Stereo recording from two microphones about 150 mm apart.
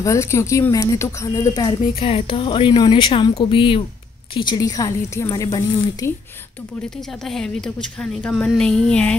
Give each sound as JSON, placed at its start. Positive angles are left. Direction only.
{"t": 0.0, "sound": "a woman's voice", "side_deg": 20}
{"t": 2.0, "sound": "a woman's voice", "side_deg": 40}
{"t": 7.2, "sound": "a woman's voice", "side_deg": 5}